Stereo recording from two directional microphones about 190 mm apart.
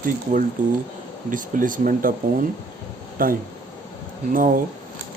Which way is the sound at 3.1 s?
50° right (ahead or behind).